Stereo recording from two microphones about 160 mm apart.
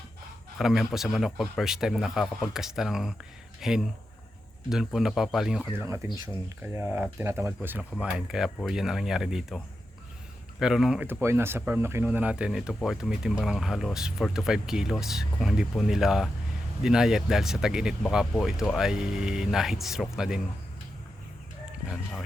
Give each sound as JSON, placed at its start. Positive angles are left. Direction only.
{"t": 0.6, "sound": "speech", "side_deg": 0}
{"t": 5.8, "sound": "speech", "side_deg": -15}
{"t": 7.9, "sound": "speech", "side_deg": 0}
{"t": 10.6, "sound": "speech", "side_deg": -5}